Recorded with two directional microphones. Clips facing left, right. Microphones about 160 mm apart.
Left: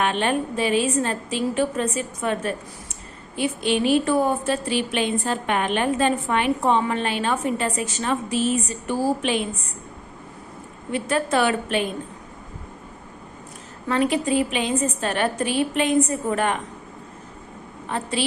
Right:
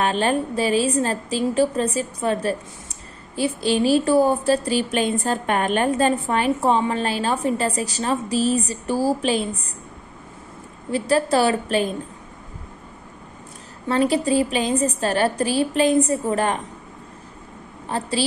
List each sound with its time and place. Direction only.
0.0 s a woman's voice: 35° right (ahead or behind)
10.9 s a woman's voice: 35° right (ahead or behind)
13.8 s a woman's voice: 35° right (ahead or behind)
17.8 s a woman's voice: 35° right (ahead or behind)